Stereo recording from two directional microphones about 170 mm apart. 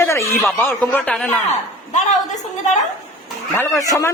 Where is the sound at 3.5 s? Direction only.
15° left (ahead or behind).